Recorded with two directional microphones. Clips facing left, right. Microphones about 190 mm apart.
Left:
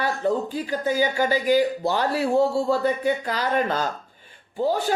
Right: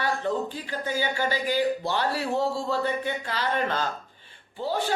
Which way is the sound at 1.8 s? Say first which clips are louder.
Left 4 dB; 45° left (ahead or behind).